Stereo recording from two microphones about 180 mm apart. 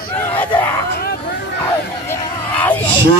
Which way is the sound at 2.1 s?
10° left (ahead or behind).